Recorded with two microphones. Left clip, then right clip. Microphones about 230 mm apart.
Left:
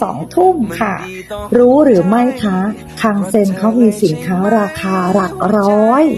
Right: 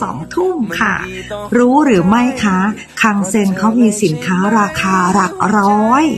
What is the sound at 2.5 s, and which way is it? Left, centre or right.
Speech, centre.